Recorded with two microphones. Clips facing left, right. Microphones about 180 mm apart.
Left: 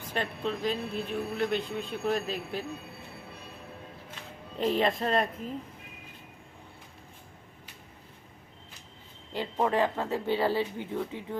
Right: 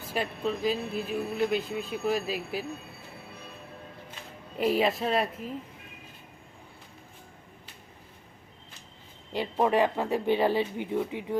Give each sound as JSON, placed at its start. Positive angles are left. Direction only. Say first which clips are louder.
{"t": 0.0, "sound": "speech", "louder": "right 2 dB", "side_deg": -5}
{"t": 4.5, "sound": "speech", "louder": "right 1 dB", "side_deg": -10}
{"t": 9.3, "sound": "speech", "louder": "right 3 dB", "side_deg": -15}